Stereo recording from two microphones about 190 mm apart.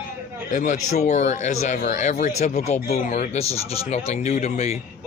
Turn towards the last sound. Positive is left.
turn(degrees=35)  # may be behind; listen again after turning